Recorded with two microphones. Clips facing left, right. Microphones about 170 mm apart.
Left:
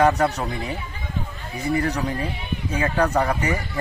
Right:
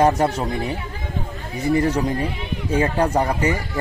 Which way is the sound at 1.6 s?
35° right (ahead or behind).